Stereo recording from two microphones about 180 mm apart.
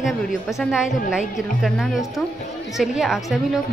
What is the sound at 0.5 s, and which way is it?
A woman's voice, centre (ahead or behind).